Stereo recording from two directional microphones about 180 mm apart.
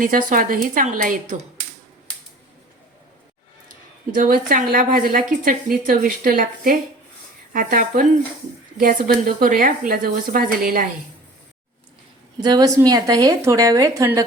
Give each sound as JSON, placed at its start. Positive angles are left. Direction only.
{"t": 0.0, "sound": "a woman's voice", "side_deg": -50}
{"t": 4.1, "sound": "a woman's voice", "side_deg": -55}
{"t": 12.4, "sound": "a woman's voice", "side_deg": -20}